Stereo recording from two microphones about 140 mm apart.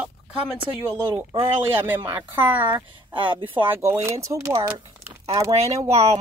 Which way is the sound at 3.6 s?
20° right (ahead or behind).